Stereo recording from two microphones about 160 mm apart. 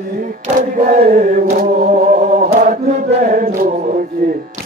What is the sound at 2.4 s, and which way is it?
Chant, 60° right (ahead or behind).